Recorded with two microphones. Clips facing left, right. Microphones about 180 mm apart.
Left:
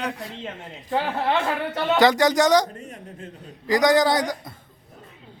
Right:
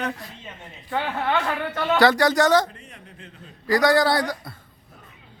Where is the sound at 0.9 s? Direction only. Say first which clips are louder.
Left 2 dB; 30° left (ahead or behind).